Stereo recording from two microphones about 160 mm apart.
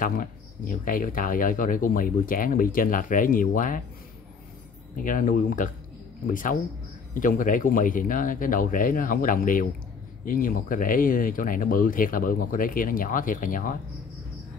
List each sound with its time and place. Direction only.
0.0 s speech: 60° left (ahead or behind)
4.9 s speech: 55° left (ahead or behind)